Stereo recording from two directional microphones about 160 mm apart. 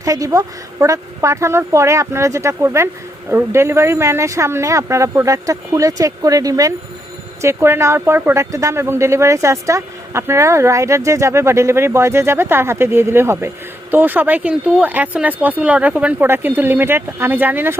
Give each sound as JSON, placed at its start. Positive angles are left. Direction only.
{"t": 0.0, "sound": "a woman's voice", "side_deg": -20}